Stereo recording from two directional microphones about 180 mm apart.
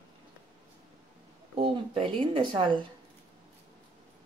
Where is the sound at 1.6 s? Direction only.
30° right (ahead or behind).